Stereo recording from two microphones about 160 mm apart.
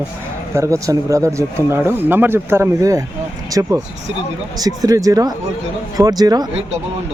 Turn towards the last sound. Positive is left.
turn(degrees=-25)  # may be behind; listen again after turning